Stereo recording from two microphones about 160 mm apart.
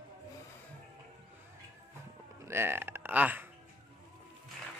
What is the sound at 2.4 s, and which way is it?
Speech, 15° right (ahead or behind).